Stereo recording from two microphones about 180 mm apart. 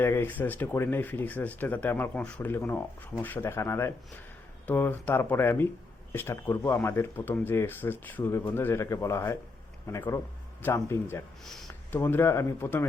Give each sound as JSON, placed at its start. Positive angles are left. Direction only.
{"t": 0.0, "sound": "speech", "side_deg": 10}
{"t": 11.4, "sound": "speech", "side_deg": 0}
{"t": 11.7, "sound": "speech", "side_deg": 15}